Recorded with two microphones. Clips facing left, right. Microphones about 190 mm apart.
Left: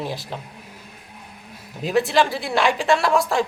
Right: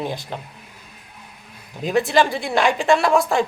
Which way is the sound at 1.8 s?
Centre (ahead or behind).